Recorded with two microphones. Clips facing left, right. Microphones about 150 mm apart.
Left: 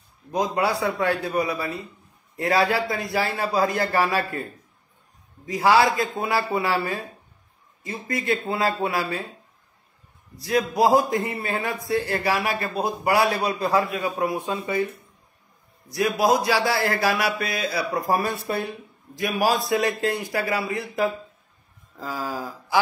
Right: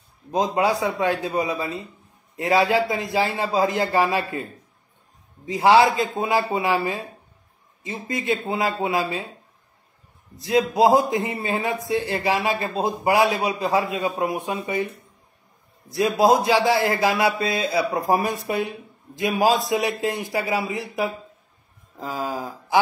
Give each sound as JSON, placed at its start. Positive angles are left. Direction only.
{"t": 0.3, "sound": "a man's voice", "side_deg": -20}
{"t": 5.5, "sound": "a man's voice", "side_deg": -25}
{"t": 10.7, "sound": "a man's voice", "side_deg": -20}
{"t": 15.9, "sound": "a man's voice", "side_deg": -25}